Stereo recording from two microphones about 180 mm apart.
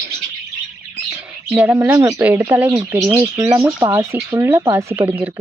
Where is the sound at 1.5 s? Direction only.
10° right (ahead or behind).